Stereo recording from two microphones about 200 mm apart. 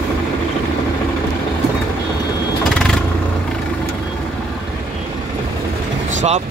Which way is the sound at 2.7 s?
5° left (ahead or behind).